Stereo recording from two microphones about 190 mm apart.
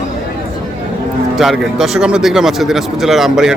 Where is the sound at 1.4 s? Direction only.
Centre (ahead or behind).